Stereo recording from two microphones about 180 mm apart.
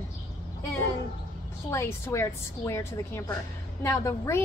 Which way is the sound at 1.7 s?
15° left (ahead or behind).